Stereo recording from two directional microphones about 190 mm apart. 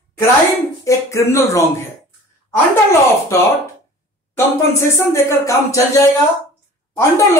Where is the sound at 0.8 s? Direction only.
15° left (ahead or behind).